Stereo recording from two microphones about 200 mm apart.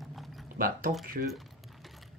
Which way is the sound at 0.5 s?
45° right (ahead or behind).